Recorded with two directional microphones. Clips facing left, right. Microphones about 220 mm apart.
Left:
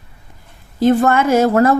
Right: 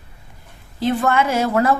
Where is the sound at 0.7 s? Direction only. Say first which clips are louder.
Left 5 dB; 45° left (ahead or behind).